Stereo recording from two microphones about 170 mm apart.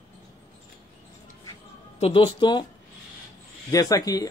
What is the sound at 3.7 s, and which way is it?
Speech, 20° left (ahead or behind).